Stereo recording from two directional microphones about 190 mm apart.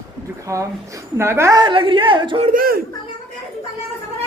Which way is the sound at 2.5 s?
50° right (ahead or behind).